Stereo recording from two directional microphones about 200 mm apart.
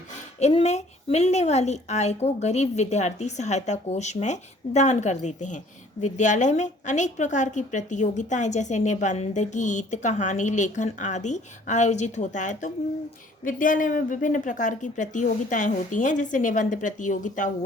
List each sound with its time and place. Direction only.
0.3 s a woman's voice: 35° left (ahead or behind)